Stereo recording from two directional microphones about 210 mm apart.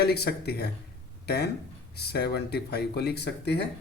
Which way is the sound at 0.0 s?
50° left (ahead or behind).